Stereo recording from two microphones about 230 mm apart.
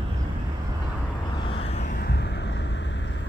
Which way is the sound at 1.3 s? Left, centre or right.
Left.